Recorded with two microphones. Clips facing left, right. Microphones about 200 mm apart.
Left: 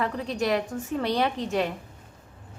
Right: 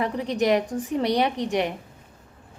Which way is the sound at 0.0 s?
15° right (ahead or behind).